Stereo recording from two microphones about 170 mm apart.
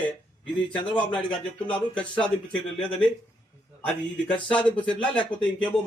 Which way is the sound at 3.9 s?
5° left (ahead or behind).